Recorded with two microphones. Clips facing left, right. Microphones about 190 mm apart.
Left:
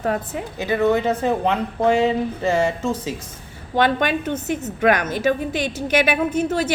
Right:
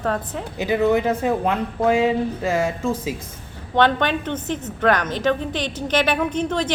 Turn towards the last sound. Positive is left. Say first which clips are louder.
# left 2 dB
turn(degrees=5)  # may be behind; listen again after turning